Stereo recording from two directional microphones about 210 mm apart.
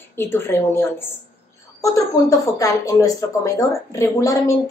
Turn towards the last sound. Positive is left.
turn(degrees=15)  # may be behind; listen again after turning